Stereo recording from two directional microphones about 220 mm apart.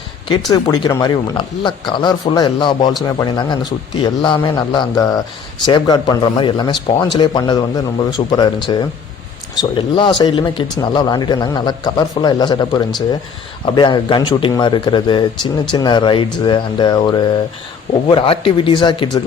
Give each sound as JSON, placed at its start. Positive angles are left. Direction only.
{"t": 0.5, "sound": "speech", "side_deg": 15}